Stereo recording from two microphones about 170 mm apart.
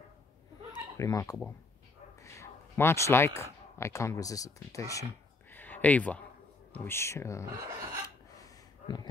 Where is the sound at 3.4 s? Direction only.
15° left (ahead or behind).